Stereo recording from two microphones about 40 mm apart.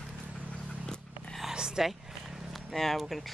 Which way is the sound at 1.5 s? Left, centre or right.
Centre.